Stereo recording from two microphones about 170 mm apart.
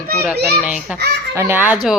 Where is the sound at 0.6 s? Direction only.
5° right (ahead or behind).